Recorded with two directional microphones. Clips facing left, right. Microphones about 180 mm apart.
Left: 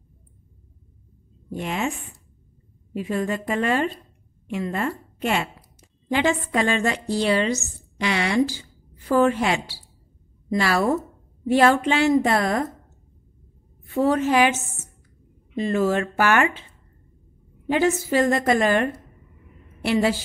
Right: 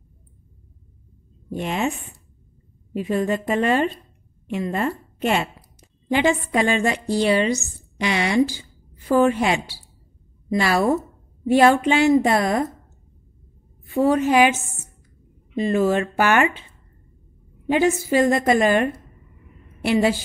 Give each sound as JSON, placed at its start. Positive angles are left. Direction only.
{"t": 1.5, "sound": "a woman's voice", "side_deg": -25}
{"t": 2.9, "sound": "a woman's voice", "side_deg": -20}
{"t": 13.9, "sound": "a woman's voice", "side_deg": -10}
{"t": 17.6, "sound": "a woman's voice", "side_deg": -15}